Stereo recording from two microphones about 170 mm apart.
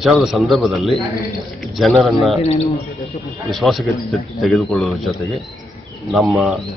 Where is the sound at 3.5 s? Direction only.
Centre (ahead or behind).